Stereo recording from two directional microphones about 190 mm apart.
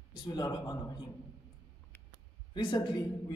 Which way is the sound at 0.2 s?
20° left (ahead or behind).